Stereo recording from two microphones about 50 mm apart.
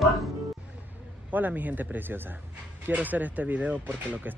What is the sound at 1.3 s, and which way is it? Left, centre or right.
Speech, right.